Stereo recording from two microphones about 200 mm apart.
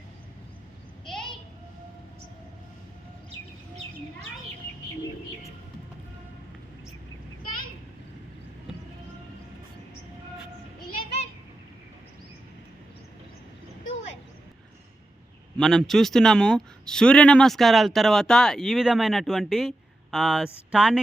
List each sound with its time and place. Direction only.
1.0 s a sound: 5° left (ahead or behind)
10.9 s children playing: 30° left (ahead or behind)
15.5 s a man's voice: 5° left (ahead or behind)